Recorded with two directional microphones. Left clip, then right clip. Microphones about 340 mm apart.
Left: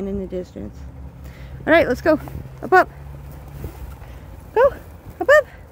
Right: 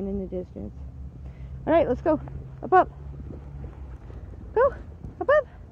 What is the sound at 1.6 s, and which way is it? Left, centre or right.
Speech, left.